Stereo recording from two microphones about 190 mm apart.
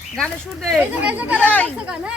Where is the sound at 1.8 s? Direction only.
5° right (ahead or behind).